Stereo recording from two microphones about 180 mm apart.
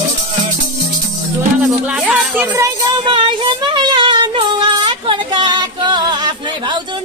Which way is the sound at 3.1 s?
30° right (ahead or behind).